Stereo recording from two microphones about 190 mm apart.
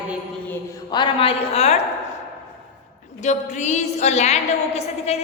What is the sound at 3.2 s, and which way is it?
A woman's voice, 40° left (ahead or behind).